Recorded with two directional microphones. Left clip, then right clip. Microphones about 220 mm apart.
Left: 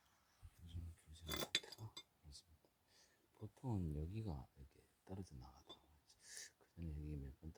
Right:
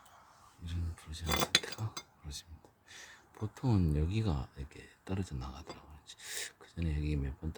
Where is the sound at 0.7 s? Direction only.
Centre (ahead or behind).